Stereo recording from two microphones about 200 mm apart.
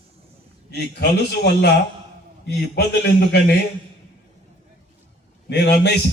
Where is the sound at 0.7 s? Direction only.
55° left (ahead or behind).